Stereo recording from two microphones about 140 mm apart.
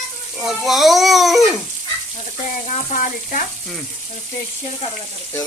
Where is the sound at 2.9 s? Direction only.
75° left (ahead or behind).